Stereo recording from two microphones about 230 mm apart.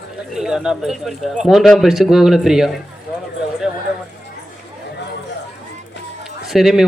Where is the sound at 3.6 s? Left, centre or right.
Centre.